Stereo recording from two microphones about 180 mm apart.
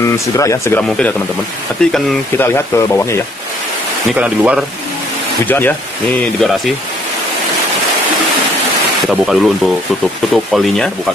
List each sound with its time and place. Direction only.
0.0 s speech: 15° left (ahead or behind)
4.1 s speech: 5° right (ahead or behind)
5.5 s speech: 10° left (ahead or behind)
9.1 s speech: 5° right (ahead or behind)